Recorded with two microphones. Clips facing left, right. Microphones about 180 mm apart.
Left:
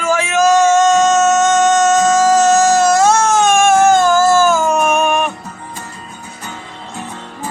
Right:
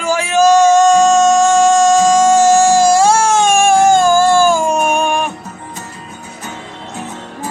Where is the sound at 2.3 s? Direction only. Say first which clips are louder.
Right 2 dB; 10° right (ahead or behind).